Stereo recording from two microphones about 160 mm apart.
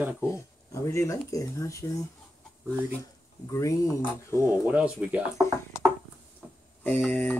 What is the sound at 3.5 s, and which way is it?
Speech, 20° left (ahead or behind).